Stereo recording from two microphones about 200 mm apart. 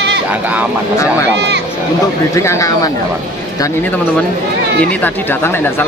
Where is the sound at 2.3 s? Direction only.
15° left (ahead or behind).